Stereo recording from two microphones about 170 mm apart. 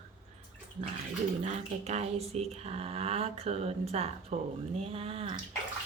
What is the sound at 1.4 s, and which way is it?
A woman's voice, 40° right (ahead or behind).